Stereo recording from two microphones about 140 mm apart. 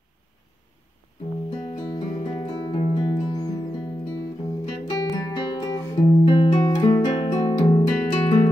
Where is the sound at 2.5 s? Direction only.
30° left (ahead or behind).